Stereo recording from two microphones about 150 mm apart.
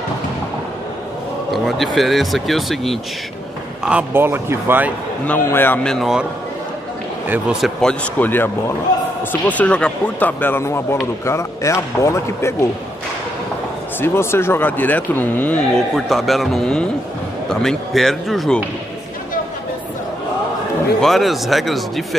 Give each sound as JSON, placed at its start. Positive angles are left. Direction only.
{"t": 1.5, "sound": "speech", "side_deg": 0}
{"t": 3.8, "sound": "speech", "side_deg": -10}
{"t": 5.2, "sound": "speech", "side_deg": 15}
{"t": 5.9, "sound": "speech", "side_deg": -5}
{"t": 7.2, "sound": "speech", "side_deg": -10}
{"t": 7.8, "sound": "speech", "side_deg": 5}
{"t": 14.0, "sound": "speech", "side_deg": 15}
{"t": 15.9, "sound": "speech", "side_deg": 0}
{"t": 21.0, "sound": "speech", "side_deg": 0}